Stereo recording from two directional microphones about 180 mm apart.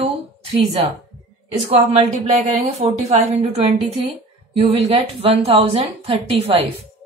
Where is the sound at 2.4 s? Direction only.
35° right (ahead or behind).